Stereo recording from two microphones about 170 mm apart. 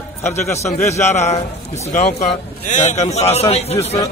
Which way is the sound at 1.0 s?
40° left (ahead or behind).